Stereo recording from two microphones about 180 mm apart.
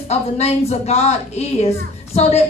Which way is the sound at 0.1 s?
35° left (ahead or behind).